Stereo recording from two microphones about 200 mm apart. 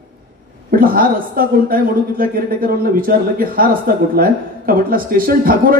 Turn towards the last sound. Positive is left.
turn(degrees=-45)  # may be behind; listen again after turning